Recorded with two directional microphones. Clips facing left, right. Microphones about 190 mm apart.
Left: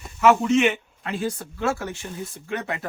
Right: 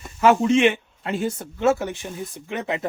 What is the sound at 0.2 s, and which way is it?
Speech, 30° right (ahead or behind).